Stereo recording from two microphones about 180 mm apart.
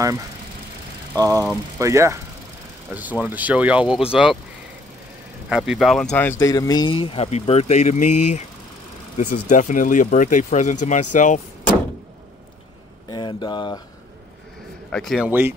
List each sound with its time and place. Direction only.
1.1 s a man's voice: 20° right (ahead or behind)
5.5 s a man's voice: centre (ahead or behind)
6.1 s speech: 10° left (ahead or behind); by 11.4 s 45° left (ahead or behind)
13.1 s speech: 25° left (ahead or behind)
14.9 s a man's voice: centre (ahead or behind)